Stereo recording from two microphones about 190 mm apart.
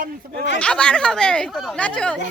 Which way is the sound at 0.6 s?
5° left (ahead or behind).